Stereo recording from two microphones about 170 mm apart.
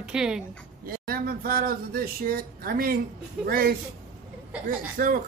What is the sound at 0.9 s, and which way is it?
Speech, 60° right (ahead or behind).